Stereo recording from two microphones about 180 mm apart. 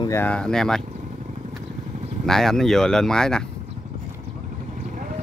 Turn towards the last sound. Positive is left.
turn(degrees=5)  # may be behind; listen again after turning